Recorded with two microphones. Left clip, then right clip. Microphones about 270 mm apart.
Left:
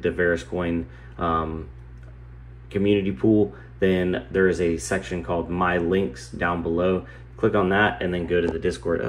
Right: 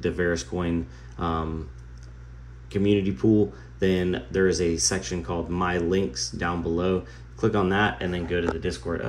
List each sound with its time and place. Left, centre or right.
0.0 s speech: centre
2.7 s speech: centre